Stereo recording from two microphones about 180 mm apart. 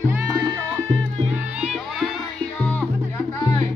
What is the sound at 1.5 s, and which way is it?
Music, 5° right (ahead or behind).